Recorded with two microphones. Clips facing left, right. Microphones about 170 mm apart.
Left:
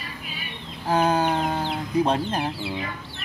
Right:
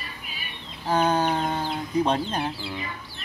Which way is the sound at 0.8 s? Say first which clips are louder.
Left 1 dB; 10° left (ahead or behind).